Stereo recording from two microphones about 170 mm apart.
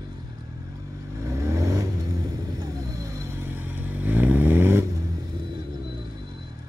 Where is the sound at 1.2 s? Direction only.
15° right (ahead or behind).